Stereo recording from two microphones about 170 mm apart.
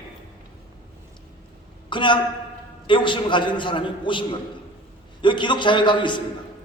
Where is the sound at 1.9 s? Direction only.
30° left (ahead or behind).